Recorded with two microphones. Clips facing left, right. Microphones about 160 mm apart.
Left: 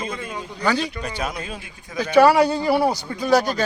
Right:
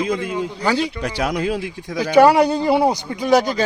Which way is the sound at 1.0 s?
75° right (ahead or behind).